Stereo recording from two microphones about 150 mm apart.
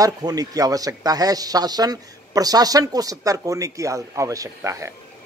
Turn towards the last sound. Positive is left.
turn(degrees=-20)  # may be behind; listen again after turning